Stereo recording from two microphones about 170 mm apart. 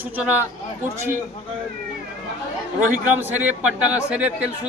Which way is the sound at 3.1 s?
10° right (ahead or behind).